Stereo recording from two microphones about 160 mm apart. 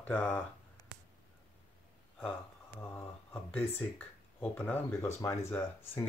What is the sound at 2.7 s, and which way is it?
Speech, 10° left (ahead or behind).